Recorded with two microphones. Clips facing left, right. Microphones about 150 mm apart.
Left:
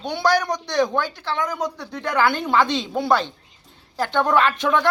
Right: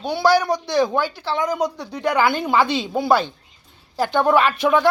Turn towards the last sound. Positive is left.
turn(degrees=-10)  # may be behind; listen again after turning